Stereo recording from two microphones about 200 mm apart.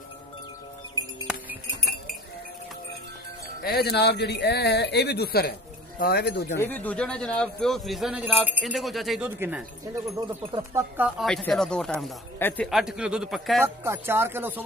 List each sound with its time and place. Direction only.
3.6 s speech: 50° left (ahead or behind)
6.6 s speech: 10° left (ahead or behind)
10.1 s speech: 20° right (ahead or behind); by 13.7 s centre (ahead or behind)
13.8 s speech: 10° right (ahead or behind)